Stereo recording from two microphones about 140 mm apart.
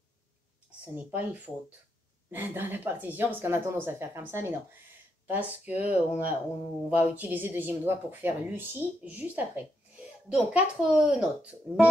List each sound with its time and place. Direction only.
0.9 s speech: 10° right (ahead or behind)